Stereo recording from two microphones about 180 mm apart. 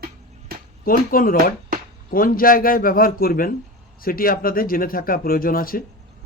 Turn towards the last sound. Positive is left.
turn(degrees=55)  # may be behind; listen again after turning